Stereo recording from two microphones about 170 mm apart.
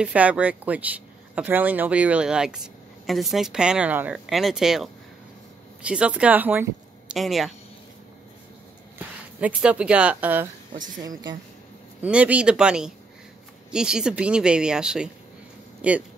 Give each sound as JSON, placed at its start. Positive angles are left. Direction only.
{"t": 0.0, "sound": "a woman's voice", "side_deg": -10}
{"t": 7.2, "sound": "a woman's voice", "side_deg": 0}
{"t": 8.9, "sound": "speech", "side_deg": -10}
{"t": 11.0, "sound": "a woman's voice", "side_deg": -20}
{"t": 12.0, "sound": "a woman's voice", "side_deg": -10}